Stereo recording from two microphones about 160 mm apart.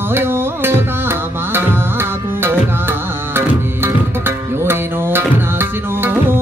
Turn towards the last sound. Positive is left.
turn(degrees=-15)  # may be behind; listen again after turning